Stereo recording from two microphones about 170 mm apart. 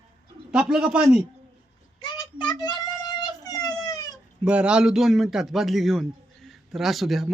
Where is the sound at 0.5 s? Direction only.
5° right (ahead or behind).